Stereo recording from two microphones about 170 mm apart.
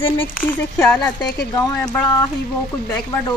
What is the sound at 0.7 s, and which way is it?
Speech, 10° left (ahead or behind).